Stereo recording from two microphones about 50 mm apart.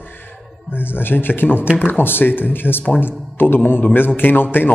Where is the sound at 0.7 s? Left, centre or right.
Left.